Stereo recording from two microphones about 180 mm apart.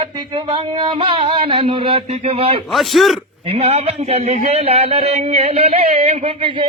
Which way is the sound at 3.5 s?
35° right (ahead or behind).